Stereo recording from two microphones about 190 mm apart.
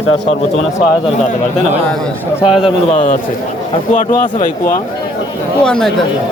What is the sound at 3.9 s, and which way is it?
Speech, 45° left (ahead or behind).